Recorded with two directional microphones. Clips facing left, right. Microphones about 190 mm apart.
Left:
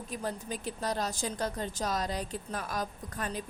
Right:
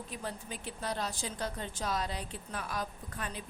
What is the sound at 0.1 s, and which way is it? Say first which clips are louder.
A woman's voice: left 8 dB; 40° left (ahead or behind).